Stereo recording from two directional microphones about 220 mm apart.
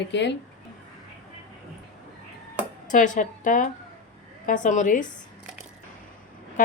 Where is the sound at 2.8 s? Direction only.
35° left (ahead or behind).